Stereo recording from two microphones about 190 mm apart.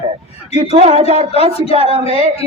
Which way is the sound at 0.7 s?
35° right (ahead or behind).